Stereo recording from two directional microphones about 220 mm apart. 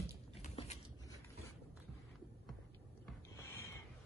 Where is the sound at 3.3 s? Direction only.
15° left (ahead or behind).